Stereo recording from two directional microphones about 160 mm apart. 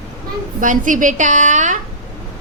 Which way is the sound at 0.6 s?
55° right (ahead or behind).